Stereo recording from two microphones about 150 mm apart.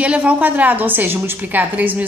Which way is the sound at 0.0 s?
10° right (ahead or behind).